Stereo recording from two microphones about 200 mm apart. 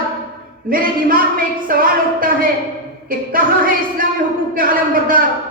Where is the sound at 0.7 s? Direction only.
45° right (ahead or behind).